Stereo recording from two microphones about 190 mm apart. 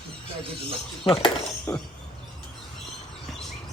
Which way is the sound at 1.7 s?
10° left (ahead or behind).